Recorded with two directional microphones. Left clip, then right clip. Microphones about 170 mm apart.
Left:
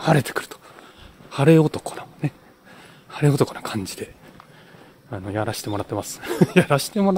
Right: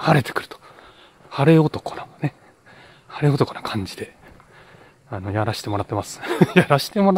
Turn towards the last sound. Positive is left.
turn(degrees=-25)  # may be behind; listen again after turning